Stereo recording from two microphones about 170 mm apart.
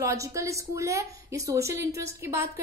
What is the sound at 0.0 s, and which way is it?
A woman's voice, 20° right (ahead or behind).